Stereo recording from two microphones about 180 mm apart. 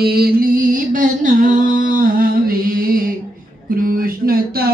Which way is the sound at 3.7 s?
55° right (ahead or behind).